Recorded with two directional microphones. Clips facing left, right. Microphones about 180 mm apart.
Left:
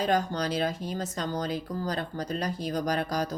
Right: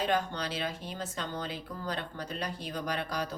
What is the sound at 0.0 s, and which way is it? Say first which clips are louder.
Speech: left 4 dB; 40° left (ahead or behind).